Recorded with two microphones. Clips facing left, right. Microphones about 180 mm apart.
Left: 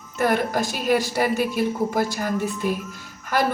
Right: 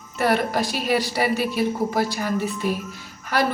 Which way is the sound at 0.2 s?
50° left (ahead or behind).